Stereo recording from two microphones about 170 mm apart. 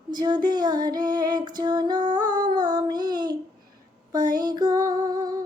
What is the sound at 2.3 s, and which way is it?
Child singing, 25° right (ahead or behind).